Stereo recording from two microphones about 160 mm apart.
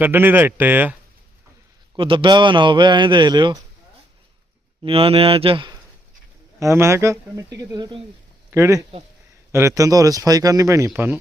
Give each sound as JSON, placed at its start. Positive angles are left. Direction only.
{"t": 0.0, "sound": "speech", "side_deg": -10}
{"t": 2.0, "sound": "speech", "side_deg": -30}
{"t": 4.8, "sound": "speech", "side_deg": -35}
{"t": 6.6, "sound": "speech", "side_deg": -15}
{"t": 8.4, "sound": "speech", "side_deg": -15}